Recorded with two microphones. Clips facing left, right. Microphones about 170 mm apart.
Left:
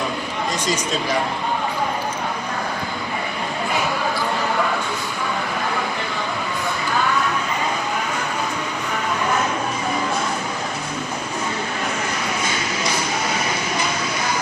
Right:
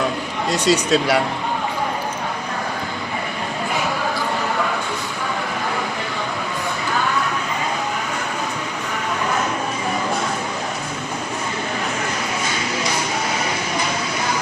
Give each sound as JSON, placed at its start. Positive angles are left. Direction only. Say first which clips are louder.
{"t": 0.7, "sound": "speech", "louder": "right 8 dB", "side_deg": -75}